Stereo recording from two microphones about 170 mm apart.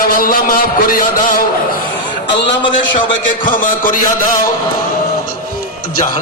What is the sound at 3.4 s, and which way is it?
Speech, 55° left (ahead or behind).